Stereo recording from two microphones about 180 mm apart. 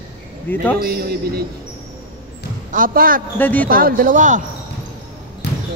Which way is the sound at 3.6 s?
50° right (ahead or behind).